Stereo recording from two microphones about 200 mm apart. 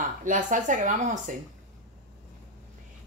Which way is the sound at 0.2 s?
40° right (ahead or behind).